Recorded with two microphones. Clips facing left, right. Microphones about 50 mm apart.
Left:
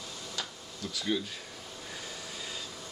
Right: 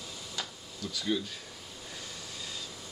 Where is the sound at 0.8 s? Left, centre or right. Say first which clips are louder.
Even; centre.